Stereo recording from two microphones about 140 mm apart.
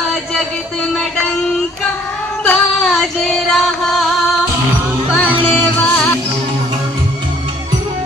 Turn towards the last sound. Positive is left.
turn(degrees=10)  # may be behind; listen again after turning